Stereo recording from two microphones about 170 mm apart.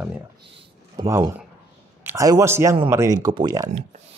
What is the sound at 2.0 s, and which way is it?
A man's voice, 20° right (ahead or behind).